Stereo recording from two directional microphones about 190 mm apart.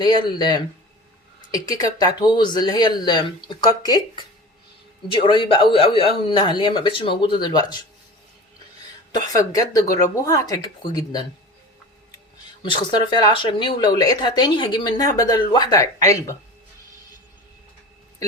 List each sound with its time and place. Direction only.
0.0 s speech: 20° left (ahead or behind)
9.1 s speech: 20° left (ahead or behind)
12.6 s speech: 25° left (ahead or behind)